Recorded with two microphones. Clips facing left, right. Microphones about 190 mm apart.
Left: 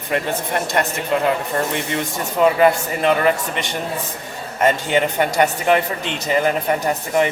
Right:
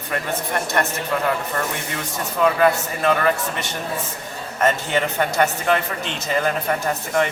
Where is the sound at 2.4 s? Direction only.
20° left (ahead or behind).